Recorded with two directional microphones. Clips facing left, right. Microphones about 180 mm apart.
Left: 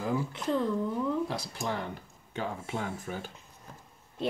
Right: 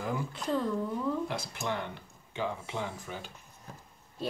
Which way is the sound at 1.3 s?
35° left (ahead or behind).